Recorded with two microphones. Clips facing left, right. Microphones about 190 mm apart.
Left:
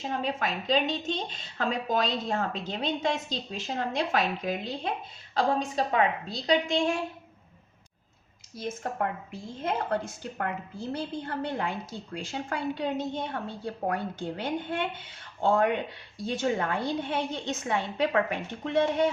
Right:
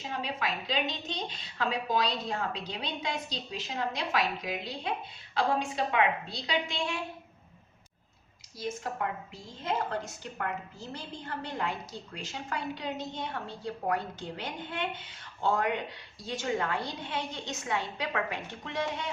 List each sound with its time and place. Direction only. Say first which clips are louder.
0.1 s a woman's voice: left 3 dB; 45° left (ahead or behind)
5.3 s a woman's voice: left 3 dB; 40° left (ahead or behind)
8.5 s a woman's voice: left 3 dB; 50° left (ahead or behind)